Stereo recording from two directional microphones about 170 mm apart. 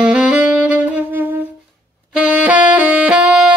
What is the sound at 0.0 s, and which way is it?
Saxophone, 5° right (ahead or behind).